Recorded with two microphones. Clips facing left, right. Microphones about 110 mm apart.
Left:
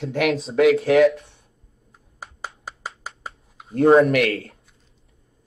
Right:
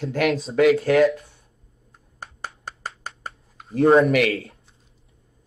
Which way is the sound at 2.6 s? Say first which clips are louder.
Even; 5° left (ahead or behind).